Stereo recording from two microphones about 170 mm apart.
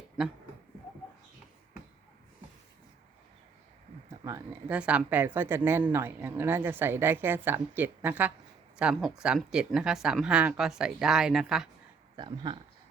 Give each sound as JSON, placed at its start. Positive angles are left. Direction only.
{"t": 4.2, "sound": "speech", "side_deg": -20}
{"t": 4.7, "sound": "speech", "side_deg": -5}
{"t": 12.1, "sound": "speech", "side_deg": -25}